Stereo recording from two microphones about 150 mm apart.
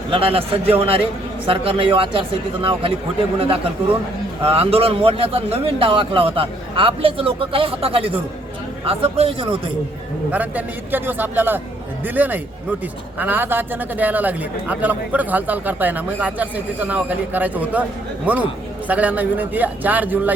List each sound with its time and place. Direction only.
0.1 s a man's voice: 40° right (ahead or behind)
4.4 s a man's voice: 40° right (ahead or behind)
10.3 s a man's voice: 10° right (ahead or behind)